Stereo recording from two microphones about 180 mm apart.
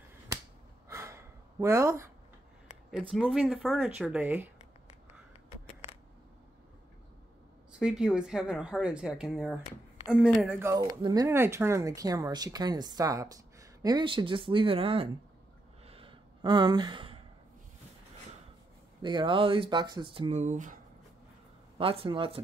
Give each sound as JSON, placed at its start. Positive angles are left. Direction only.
{"t": 0.8, "sound": "gasp", "side_deg": -15}
{"t": 2.9, "sound": "a woman's voice", "side_deg": 5}
{"t": 7.8, "sound": "a woman's voice", "side_deg": -5}
{"t": 10.9, "sound": "speech", "side_deg": -20}
{"t": 15.9, "sound": "gasp", "side_deg": -30}
{"t": 19.0, "sound": "speech", "side_deg": -25}
{"t": 20.2, "sound": "speech", "side_deg": -40}
{"t": 21.7, "sound": "speech", "side_deg": -30}